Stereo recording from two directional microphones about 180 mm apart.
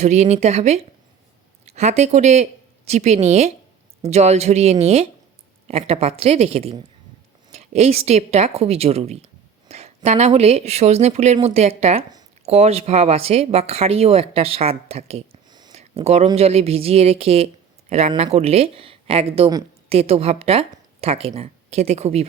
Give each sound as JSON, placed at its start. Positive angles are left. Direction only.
{"t": 0.0, "sound": "speech", "side_deg": -40}
{"t": 15.4, "sound": "a sound", "side_deg": -25}
{"t": 16.0, "sound": "speech", "side_deg": -35}